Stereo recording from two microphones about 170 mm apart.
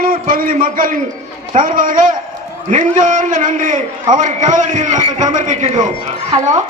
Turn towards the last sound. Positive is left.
turn(degrees=-45)  # may be behind; listen again after turning